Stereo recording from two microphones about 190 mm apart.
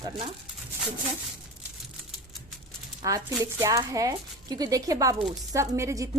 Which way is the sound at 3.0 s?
15° right (ahead or behind).